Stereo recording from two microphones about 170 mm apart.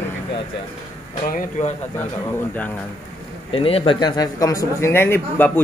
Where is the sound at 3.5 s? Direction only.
35° left (ahead or behind).